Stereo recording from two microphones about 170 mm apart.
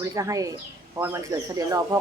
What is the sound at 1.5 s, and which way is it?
Speech, 20° right (ahead or behind).